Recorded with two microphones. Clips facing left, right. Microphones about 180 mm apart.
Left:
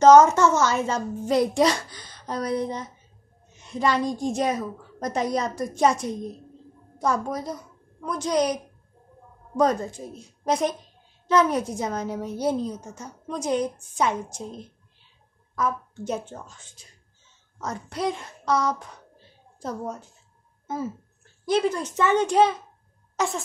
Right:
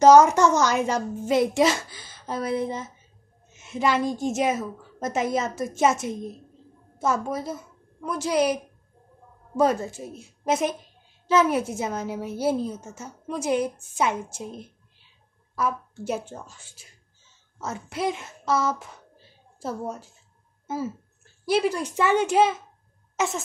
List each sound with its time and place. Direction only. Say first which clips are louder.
0.0 s a woman's voice: even; 10° right (ahead or behind)
1.3 s a woman's voice: even; centre (ahead or behind)
9.6 s a woman's voice: even; 5° right (ahead or behind)
15.5 s a woman's voice: even; 10° right (ahead or behind)